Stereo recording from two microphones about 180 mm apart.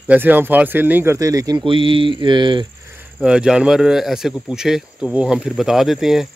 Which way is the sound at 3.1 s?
5° right (ahead or behind).